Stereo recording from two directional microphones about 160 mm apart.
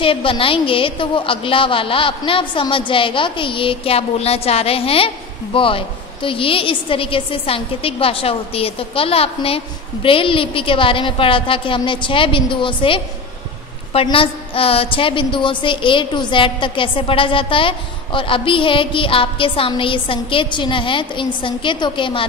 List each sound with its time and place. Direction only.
0.0 s a woman's voice: 35° left (ahead or behind)